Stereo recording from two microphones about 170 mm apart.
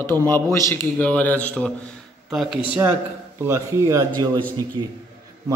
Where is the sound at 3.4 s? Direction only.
15° right (ahead or behind).